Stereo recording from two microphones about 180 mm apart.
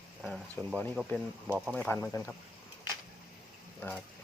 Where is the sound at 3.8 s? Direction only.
10° left (ahead or behind).